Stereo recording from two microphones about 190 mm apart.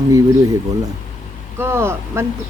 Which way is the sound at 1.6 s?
15° right (ahead or behind).